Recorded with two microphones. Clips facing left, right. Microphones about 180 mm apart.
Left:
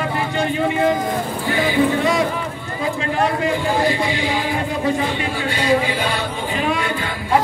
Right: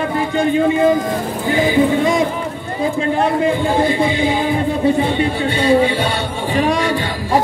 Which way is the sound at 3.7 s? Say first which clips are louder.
Right 4 dB; 25° right (ahead or behind).